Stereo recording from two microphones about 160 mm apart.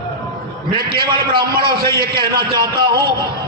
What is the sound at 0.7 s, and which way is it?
A man's voice, 70° right (ahead or behind).